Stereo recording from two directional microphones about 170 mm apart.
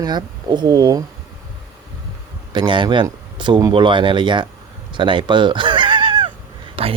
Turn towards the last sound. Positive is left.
turn(degrees=-35)  # may be behind; listen again after turning